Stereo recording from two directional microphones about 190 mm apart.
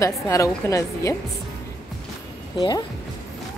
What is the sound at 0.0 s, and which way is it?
Speech, 15° left (ahead or behind).